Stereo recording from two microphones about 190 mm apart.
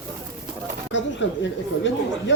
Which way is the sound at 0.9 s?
70° left (ahead or behind).